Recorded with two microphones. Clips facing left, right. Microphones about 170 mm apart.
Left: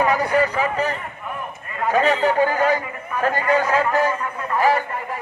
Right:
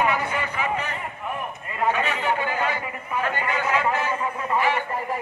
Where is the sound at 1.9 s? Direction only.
40° left (ahead or behind).